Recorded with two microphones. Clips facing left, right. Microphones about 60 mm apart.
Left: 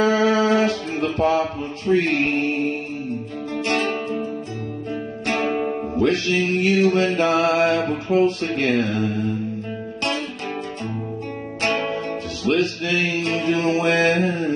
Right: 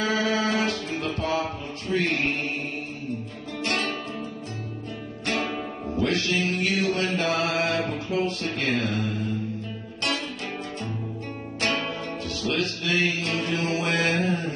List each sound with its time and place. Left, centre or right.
0.0 s mantra: left
3.5 s music: left
5.2 s music: left
7.0 s mantra: left
11.6 s music: left
13.7 s mantra: left